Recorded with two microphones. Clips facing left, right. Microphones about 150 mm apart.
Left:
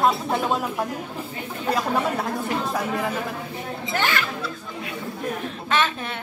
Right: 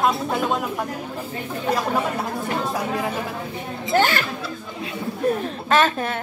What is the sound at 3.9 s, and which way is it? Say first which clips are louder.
Speech: right 6 dB; 35° right (ahead or behind).